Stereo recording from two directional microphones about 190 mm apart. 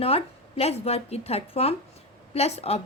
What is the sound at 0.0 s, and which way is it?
A woman's voice, 30° left (ahead or behind).